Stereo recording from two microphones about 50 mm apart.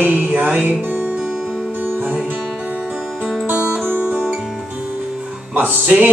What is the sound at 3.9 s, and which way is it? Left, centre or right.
Music, right.